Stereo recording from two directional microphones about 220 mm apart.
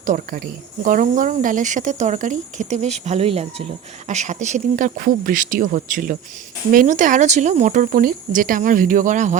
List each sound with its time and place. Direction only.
0.0 s speech: 40° right (ahead or behind)